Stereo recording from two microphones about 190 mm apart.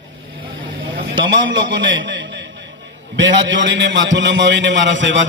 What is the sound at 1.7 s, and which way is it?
Speech, 70° right (ahead or behind).